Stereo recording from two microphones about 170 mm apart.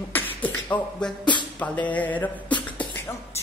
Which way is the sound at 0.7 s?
10° left (ahead or behind).